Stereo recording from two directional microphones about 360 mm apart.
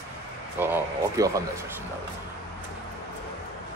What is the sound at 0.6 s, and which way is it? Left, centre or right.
Speech, centre.